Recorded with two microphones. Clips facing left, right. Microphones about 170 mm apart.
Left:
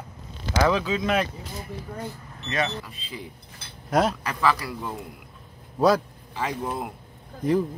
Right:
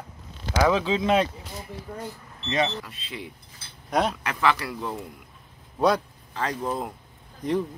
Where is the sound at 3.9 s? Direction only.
Centre (ahead or behind).